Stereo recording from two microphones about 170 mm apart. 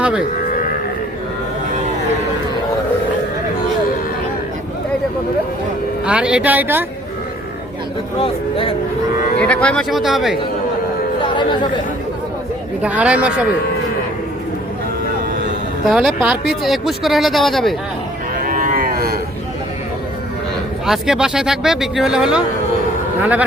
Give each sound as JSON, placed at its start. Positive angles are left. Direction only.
{"t": 6.1, "sound": "a woman's voice", "side_deg": -5}
{"t": 8.2, "sound": "speech", "side_deg": 30}
{"t": 9.4, "sound": "speech", "side_deg": 5}
{"t": 12.8, "sound": "a woman's voice", "side_deg": -10}
{"t": 15.9, "sound": "speech", "side_deg": 0}
{"t": 18.4, "sound": "cattle", "side_deg": -50}
{"t": 20.8, "sound": "speech", "side_deg": -5}